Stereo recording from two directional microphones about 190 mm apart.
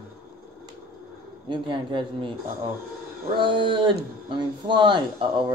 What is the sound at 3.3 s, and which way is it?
Speech, 25° right (ahead or behind).